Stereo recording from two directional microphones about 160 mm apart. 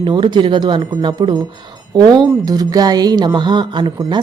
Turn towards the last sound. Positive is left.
turn(degrees=-30)  # may be behind; listen again after turning